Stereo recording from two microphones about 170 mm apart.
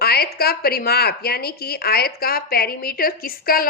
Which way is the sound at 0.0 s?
65° left (ahead or behind).